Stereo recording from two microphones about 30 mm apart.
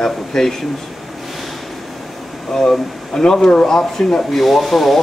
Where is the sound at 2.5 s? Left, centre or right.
Left.